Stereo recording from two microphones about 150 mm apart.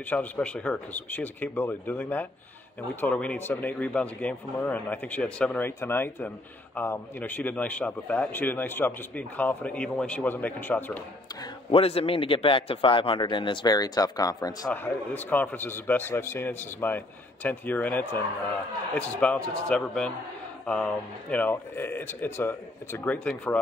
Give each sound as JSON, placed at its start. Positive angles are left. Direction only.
{"t": 0.1, "sound": "speech", "side_deg": 10}
{"t": 11.7, "sound": "a man's voice", "side_deg": 40}
{"t": 14.7, "sound": "speech", "side_deg": 10}